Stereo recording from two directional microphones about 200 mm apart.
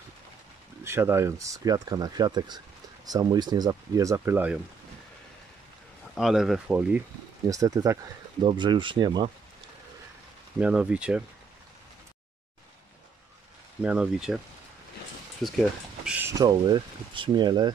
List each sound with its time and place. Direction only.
0.8 s speech: 10° right (ahead or behind)
6.1 s speech: centre (ahead or behind)
7.4 s speech: 15° right (ahead or behind)
10.6 s speech: 5° right (ahead or behind)
13.8 s speech: 5° right (ahead or behind)
15.4 s speech: centre (ahead or behind)
16.1 s speech: 10° right (ahead or behind)